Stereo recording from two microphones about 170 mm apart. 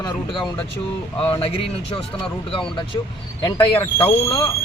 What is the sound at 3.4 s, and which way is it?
Speech, 25° left (ahead or behind).